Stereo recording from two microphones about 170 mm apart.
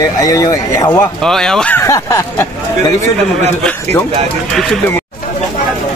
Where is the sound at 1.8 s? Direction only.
15° left (ahead or behind).